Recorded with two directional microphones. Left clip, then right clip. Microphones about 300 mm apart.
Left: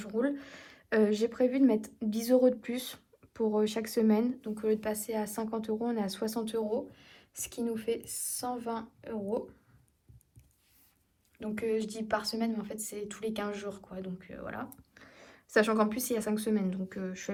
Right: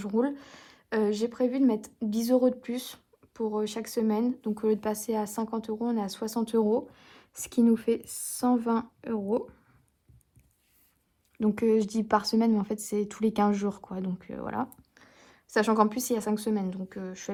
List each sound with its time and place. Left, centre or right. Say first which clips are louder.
0.0 s a woman's voice: right 3 dB; centre
11.3 s a woman's voice: right 7 dB; centre